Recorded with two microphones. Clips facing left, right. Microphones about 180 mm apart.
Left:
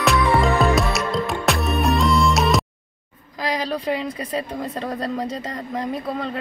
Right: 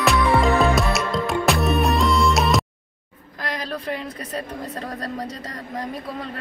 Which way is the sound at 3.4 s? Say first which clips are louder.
Left 5 dB; 90° left.